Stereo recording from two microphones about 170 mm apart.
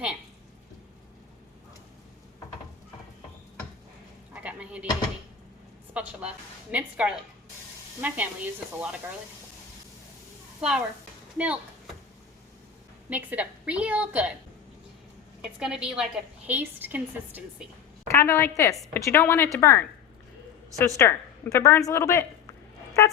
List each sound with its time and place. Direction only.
4.4 s a sound: 5° right (ahead or behind)
5.9 s a woman's voice: 10° right (ahead or behind)
10.6 s a woman's voice: 5° right (ahead or behind)
11.3 s a sound: 5° right (ahead or behind)
13.1 s a woman's voice: 10° right (ahead or behind)
15.4 s a woman's voice: 5° right (ahead or behind)
18.1 s a woman's voice: 15° left (ahead or behind)